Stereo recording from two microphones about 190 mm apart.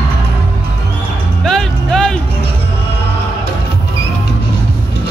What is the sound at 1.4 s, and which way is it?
Music, 5° left (ahead or behind).